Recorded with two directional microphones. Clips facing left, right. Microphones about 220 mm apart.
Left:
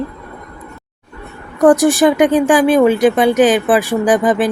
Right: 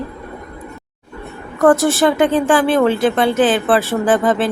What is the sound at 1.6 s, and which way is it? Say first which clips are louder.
Speech: left 3 dB; 15° left (ahead or behind).